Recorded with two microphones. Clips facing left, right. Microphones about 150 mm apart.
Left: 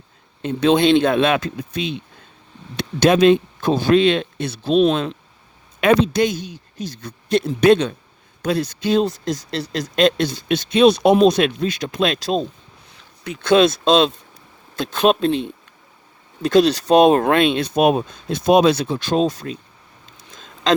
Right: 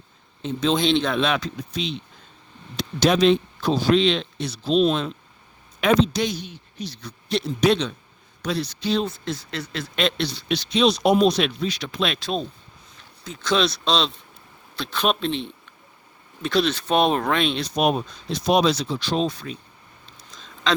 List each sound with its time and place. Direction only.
0.4 s speech: 60° left (ahead or behind); by 12.5 s 45° left (ahead or behind)
12.9 s speech: 65° left (ahead or behind); by 15.3 s 45° left (ahead or behind)
16.4 s speech: 40° left (ahead or behind)
20.3 s a sound: 45° left (ahead or behind)